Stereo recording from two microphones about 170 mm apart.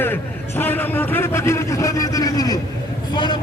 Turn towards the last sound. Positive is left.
turn(degrees=25)  # may be behind; listen again after turning